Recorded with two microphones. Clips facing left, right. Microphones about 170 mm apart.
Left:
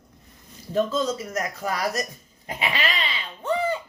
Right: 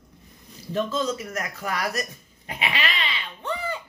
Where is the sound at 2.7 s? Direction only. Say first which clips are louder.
Left 1 dB; 35° left (ahead or behind).